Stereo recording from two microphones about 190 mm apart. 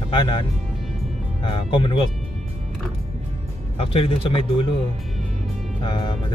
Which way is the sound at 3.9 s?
30° left (ahead or behind).